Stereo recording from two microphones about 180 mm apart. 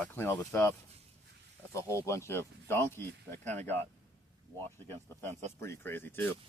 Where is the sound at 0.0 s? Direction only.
10° left (ahead or behind).